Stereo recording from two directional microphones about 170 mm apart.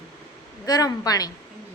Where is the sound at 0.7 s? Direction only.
20° left (ahead or behind).